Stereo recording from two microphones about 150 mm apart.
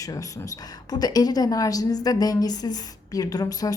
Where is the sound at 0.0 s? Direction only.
25° left (ahead or behind).